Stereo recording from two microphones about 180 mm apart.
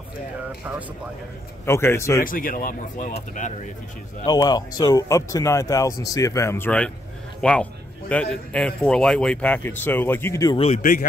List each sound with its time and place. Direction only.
1.7 s speech: 15° left (ahead or behind)
2.2 s speech: 50° left (ahead or behind)
4.3 s a man's voice: 20° left (ahead or behind)
10.8 s speech: 50° left (ahead or behind)